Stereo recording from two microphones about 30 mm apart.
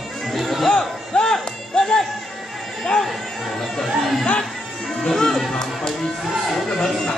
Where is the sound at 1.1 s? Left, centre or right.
Left.